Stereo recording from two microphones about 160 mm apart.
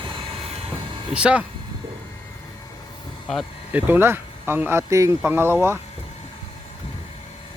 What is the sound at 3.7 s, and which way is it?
Speech, 15° right (ahead or behind).